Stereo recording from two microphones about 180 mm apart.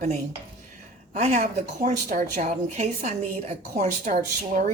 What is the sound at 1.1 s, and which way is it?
Speech, 40° right (ahead or behind).